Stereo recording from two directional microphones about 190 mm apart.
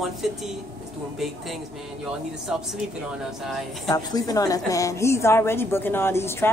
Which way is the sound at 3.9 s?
20° left (ahead or behind).